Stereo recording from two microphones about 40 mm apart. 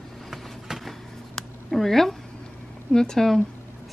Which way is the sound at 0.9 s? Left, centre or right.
Centre.